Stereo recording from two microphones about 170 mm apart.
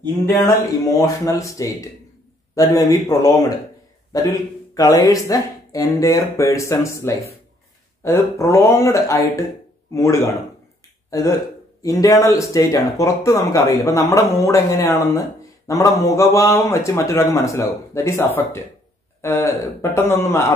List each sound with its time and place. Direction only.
0.8 s a man's voice: 20° left (ahead or behind)